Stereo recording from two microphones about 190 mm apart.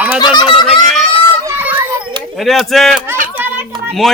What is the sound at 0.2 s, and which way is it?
Speech, 25° left (ahead or behind).